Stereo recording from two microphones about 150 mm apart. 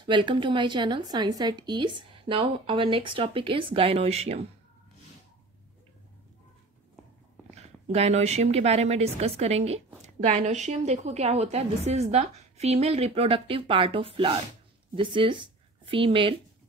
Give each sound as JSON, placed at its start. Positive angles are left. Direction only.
{"t": 0.0, "sound": "a woman's voice", "side_deg": -30}
{"t": 7.5, "sound": "a woman's voice", "side_deg": -45}